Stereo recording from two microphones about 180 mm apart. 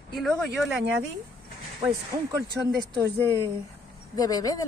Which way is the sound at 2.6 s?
Centre (ahead or behind).